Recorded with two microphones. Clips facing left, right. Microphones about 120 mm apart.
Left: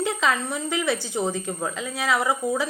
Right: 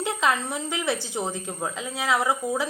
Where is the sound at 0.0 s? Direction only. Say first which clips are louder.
Left 1 dB; 15° right (ahead or behind).